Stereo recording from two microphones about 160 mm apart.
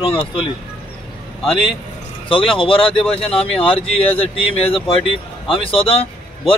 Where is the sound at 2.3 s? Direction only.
35° left (ahead or behind).